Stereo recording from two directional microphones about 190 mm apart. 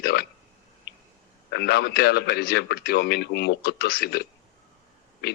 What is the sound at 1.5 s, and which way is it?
A man's voice, 55° left (ahead or behind).